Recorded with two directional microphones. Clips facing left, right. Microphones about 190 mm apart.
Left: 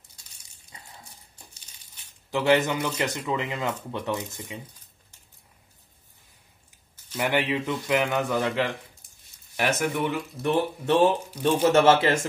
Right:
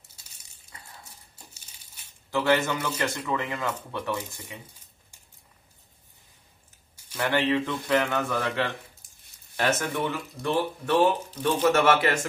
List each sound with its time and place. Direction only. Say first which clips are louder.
2.3 s a man's voice: left 2 dB; 15° left (ahead or behind)
7.2 s a man's voice: right 1 dB; 10° left (ahead or behind)